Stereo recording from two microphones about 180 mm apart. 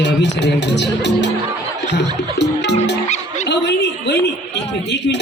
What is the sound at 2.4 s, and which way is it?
Speech, 70° left (ahead or behind).